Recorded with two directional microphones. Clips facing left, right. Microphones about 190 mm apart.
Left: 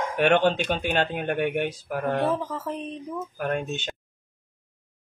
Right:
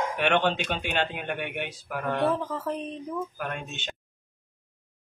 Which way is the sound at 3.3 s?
45° left (ahead or behind).